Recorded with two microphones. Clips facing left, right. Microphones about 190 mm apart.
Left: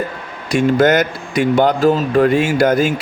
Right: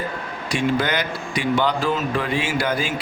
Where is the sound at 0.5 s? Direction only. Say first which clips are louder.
Left 9 dB; 45° left (ahead or behind).